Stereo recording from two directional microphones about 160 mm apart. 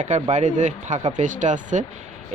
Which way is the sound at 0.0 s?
50° right (ahead or behind).